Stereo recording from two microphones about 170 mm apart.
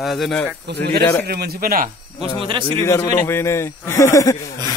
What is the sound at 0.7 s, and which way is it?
A man's voice, 70° right (ahead or behind).